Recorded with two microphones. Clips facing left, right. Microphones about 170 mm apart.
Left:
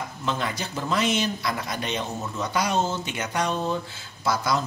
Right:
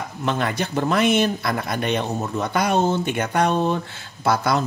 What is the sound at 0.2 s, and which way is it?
Speech, 60° right (ahead or behind).